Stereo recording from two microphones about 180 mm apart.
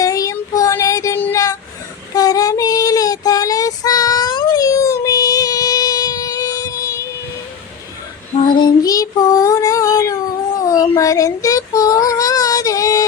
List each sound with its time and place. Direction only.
0.0 s child singing: 20° left (ahead or behind)
8.5 s child singing: 20° left (ahead or behind)